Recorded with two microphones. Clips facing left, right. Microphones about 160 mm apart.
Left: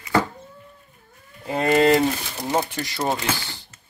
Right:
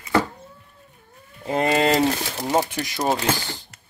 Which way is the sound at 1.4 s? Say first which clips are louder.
Left 2 dB; 20° right (ahead or behind).